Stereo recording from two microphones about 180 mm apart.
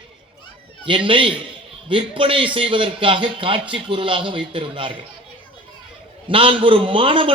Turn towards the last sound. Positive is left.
turn(degrees=-30)  # may be behind; listen again after turning